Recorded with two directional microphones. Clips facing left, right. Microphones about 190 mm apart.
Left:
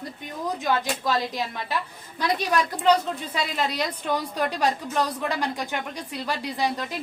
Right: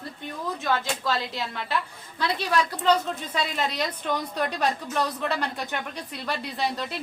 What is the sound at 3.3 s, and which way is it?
A woman's voice, 10° left (ahead or behind).